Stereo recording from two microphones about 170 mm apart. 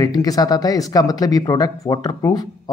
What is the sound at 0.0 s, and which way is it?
Speech, 20° left (ahead or behind).